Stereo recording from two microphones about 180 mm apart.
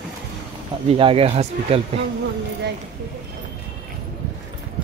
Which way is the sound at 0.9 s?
30° right (ahead or behind).